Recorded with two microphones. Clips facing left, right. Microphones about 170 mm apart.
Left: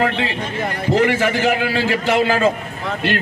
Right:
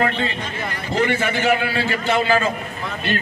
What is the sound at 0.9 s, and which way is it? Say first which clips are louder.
A man's voice: left 3 dB; 90° left.